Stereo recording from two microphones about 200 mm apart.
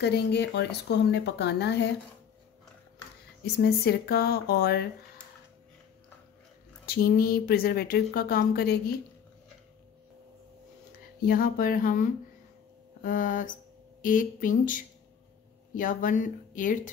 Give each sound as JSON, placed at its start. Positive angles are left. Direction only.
{"t": 0.0, "sound": "speech", "side_deg": 55}
{"t": 3.5, "sound": "speech", "side_deg": 55}
{"t": 6.9, "sound": "speech", "side_deg": 50}
{"t": 11.2, "sound": "speech", "side_deg": 45}